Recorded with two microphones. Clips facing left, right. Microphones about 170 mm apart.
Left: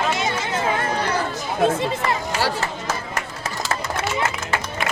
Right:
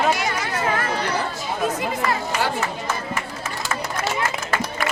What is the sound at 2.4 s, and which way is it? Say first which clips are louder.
Run: even; 40° left (ahead or behind).